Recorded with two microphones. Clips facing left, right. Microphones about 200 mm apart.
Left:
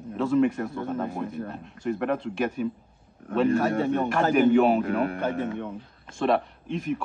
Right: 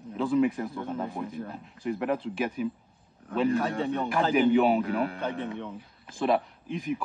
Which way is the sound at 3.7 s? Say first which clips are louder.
Left 4 dB; 50° left (ahead or behind).